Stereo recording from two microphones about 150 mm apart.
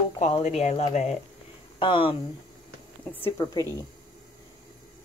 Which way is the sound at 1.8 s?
35° left (ahead or behind).